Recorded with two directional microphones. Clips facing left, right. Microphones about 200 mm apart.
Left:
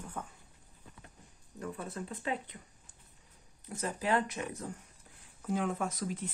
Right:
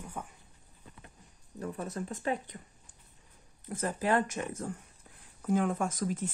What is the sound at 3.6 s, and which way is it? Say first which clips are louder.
Speech: right 3 dB; 50° right (ahead or behind).